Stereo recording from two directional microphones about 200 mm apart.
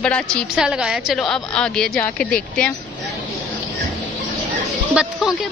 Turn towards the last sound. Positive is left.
turn(degrees=-5)  # may be behind; listen again after turning